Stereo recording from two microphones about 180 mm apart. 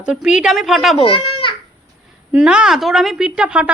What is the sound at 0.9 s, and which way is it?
Speech, 30° left (ahead or behind).